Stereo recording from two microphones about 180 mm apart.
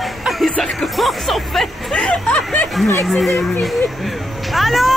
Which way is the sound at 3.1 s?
Centre (ahead or behind).